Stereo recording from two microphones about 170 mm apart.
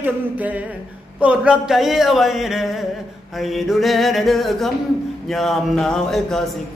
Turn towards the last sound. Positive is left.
turn(degrees=0)  # may be behind; listen again after turning